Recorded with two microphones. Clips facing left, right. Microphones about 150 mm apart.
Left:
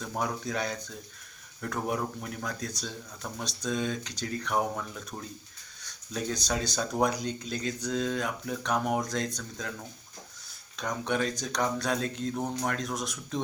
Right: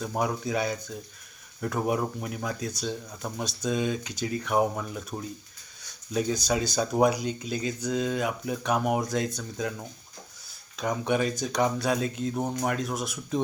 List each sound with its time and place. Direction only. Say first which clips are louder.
0.0 s speech: right 4 dB; 10° right (ahead or behind)
10.8 s speech: right 4 dB; 10° right (ahead or behind)